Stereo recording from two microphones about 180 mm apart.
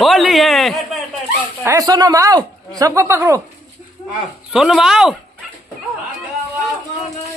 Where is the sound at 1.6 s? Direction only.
15° right (ahead or behind).